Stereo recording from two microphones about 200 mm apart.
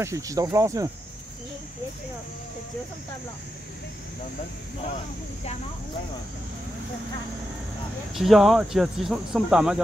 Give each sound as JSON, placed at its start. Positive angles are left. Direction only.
{"t": 0.0, "sound": "speech", "side_deg": -15}
{"t": 8.1, "sound": "speech", "side_deg": 0}